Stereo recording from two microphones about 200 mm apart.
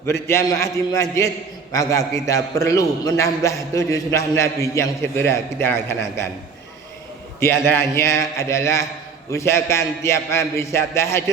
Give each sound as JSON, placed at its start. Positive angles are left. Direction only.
{"t": 0.0, "sound": "a man's voice", "side_deg": 15}
{"t": 7.3, "sound": "a man's voice", "side_deg": 10}